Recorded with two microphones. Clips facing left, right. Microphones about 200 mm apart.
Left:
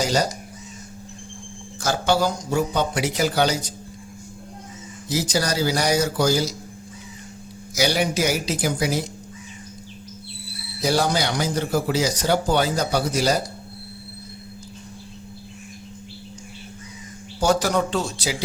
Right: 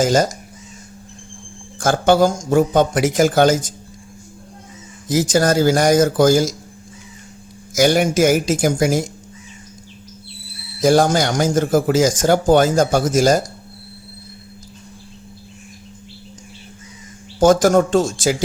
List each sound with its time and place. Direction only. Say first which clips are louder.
0.0 s speech: right 6 dB; 50° right (ahead or behind)
1.8 s speech: right 7 dB; 50° right (ahead or behind)
5.0 s speech: right 8 dB; 50° right (ahead or behind)
7.7 s speech: right 7 dB; 50° right (ahead or behind)
10.8 s speech: right 7 dB; 50° right (ahead or behind)
17.4 s speech: right 8 dB; 45° right (ahead or behind)